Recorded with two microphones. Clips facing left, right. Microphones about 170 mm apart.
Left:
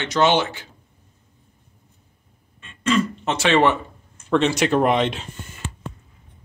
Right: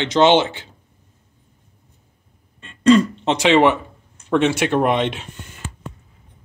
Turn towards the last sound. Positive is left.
turn(degrees=0)  # may be behind; listen again after turning